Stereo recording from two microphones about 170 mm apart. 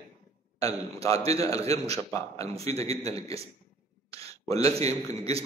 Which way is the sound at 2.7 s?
40° right (ahead or behind).